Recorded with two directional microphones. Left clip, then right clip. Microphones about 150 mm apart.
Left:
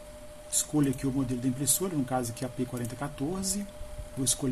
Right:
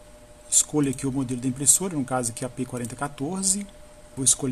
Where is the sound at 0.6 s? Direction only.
45° right (ahead or behind).